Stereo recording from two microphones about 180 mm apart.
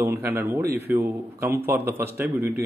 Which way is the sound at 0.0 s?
15° right (ahead or behind).